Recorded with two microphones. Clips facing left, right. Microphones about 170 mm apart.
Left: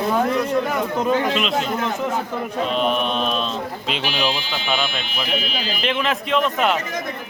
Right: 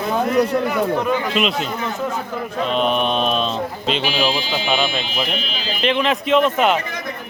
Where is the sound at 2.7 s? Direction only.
5° left (ahead or behind).